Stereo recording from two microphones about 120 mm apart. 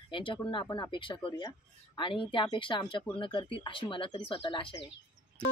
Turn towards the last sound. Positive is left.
turn(degrees=45)  # may be behind; listen again after turning